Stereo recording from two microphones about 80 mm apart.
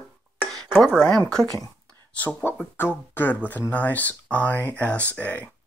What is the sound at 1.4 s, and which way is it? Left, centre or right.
Speech, right.